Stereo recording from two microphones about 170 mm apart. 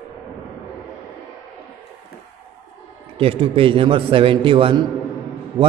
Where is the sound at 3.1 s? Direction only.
35° right (ahead or behind).